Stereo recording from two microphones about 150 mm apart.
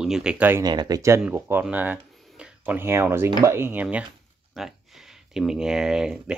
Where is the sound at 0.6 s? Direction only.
30° right (ahead or behind).